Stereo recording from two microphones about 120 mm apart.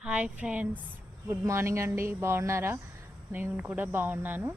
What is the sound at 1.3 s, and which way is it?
Speech, 20° right (ahead or behind).